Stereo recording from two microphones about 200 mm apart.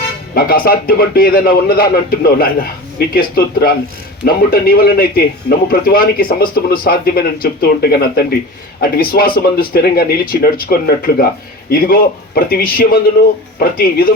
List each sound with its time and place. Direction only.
0.3 s a man's voice: 50° left (ahead or behind)